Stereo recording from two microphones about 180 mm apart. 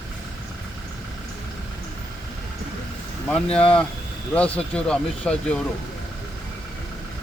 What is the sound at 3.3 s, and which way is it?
Speech, 5° left (ahead or behind).